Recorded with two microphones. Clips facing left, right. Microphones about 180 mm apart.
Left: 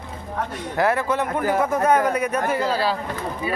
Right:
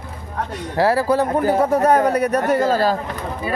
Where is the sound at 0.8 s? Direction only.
35° right (ahead or behind).